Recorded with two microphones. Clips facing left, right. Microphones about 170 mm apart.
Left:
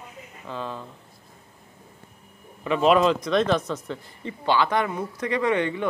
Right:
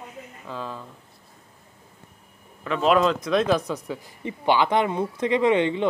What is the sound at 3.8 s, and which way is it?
Speech, 15° right (ahead or behind).